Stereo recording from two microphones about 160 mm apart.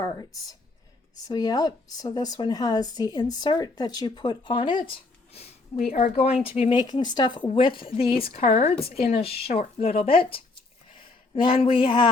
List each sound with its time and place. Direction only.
0.0 s speech: 20° left (ahead or behind)
5.3 s a sound: 40° left (ahead or behind)
6.0 s a woman's voice: 45° left (ahead or behind)
11.6 s a woman's voice: 30° left (ahead or behind)